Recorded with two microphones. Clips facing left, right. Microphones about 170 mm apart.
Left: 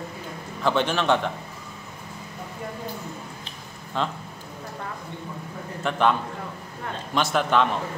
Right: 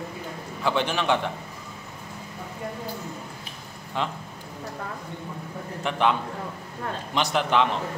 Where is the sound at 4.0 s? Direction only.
15° right (ahead or behind).